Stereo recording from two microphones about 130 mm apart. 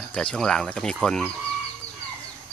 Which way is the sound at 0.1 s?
5° left (ahead or behind).